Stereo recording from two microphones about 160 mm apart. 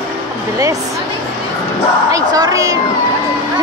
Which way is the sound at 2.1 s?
25° right (ahead or behind).